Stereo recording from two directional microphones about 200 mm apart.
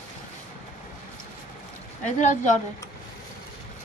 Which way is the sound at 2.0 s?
35° left (ahead or behind).